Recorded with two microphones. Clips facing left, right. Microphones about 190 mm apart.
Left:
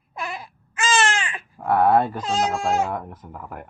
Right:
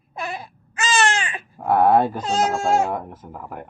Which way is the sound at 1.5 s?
5° right (ahead or behind).